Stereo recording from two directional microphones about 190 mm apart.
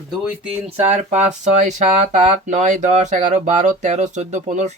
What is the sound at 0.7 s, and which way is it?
Speech, 35° right (ahead or behind).